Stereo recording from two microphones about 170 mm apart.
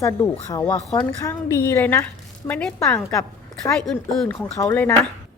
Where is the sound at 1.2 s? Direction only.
15° left (ahead or behind).